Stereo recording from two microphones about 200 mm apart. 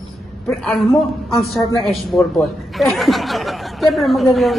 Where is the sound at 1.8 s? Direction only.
Centre (ahead or behind).